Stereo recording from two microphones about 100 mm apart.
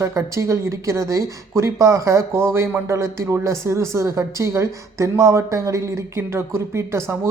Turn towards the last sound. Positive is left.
turn(degrees=-25)  # may be behind; listen again after turning